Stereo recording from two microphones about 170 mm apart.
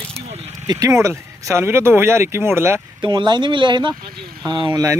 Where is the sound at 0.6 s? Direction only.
20° right (ahead or behind).